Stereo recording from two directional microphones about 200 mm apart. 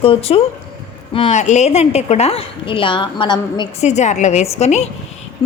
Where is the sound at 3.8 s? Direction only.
35° left (ahead or behind).